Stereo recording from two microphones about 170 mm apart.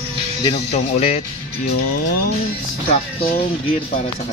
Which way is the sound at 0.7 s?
40° left (ahead or behind).